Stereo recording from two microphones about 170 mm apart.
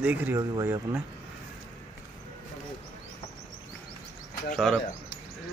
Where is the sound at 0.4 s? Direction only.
20° right (ahead or behind).